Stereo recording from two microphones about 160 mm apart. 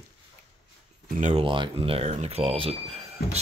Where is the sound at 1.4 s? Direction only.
30° right (ahead or behind).